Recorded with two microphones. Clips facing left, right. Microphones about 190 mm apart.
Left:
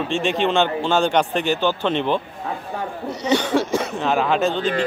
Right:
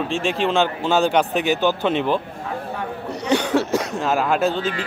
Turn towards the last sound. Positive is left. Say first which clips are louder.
# even
turn(degrees=-5)  # may be behind; listen again after turning